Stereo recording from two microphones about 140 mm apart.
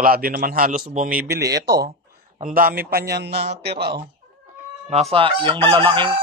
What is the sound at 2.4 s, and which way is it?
Speech, 85° right.